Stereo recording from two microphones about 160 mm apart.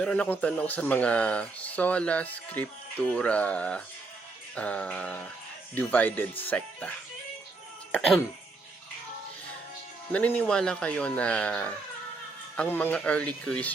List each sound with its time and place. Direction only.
0.0 s speech: 10° left (ahead or behind)
10.1 s speech: 10° left (ahead or behind)